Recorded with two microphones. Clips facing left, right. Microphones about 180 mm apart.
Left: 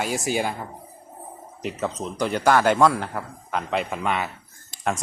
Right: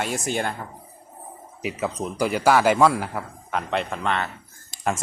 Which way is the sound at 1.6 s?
10° right (ahead or behind).